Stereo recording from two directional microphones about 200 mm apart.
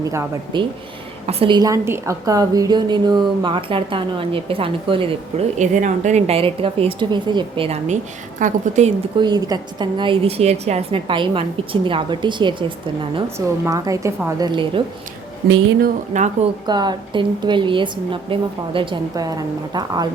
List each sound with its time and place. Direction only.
0.0 s speech: 15° right (ahead or behind)
1.3 s a woman's voice: 25° right (ahead or behind)
9.1 s a woman's voice: 20° right (ahead or behind)
15.8 s a woman's voice: 35° right (ahead or behind)
16.6 s a woman's voice: 20° right (ahead or behind)